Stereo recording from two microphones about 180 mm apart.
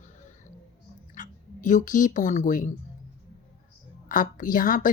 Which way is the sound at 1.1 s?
45° left (ahead or behind).